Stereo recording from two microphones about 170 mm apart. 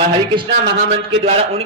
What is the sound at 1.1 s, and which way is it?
Speech, 35° right (ahead or behind).